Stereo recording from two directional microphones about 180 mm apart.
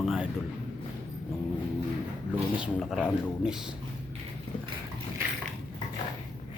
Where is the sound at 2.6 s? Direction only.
5° right (ahead or behind).